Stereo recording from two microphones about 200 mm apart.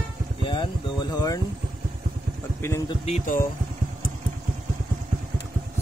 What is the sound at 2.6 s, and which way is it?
Speech, 15° left (ahead or behind).